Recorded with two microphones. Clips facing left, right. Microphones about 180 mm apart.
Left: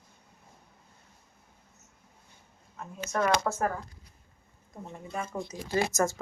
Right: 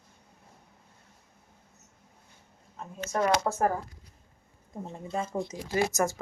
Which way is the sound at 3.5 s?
35° right (ahead or behind).